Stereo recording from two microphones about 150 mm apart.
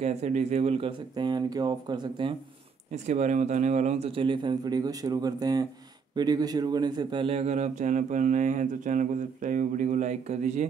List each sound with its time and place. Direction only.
0.0 s speech: 45° right (ahead or behind); by 2.3 s 30° right (ahead or behind)
2.9 s a man's voice: 50° right (ahead or behind)